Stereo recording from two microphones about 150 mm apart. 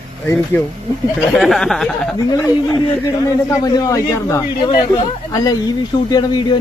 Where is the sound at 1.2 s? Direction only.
Centre (ahead or behind).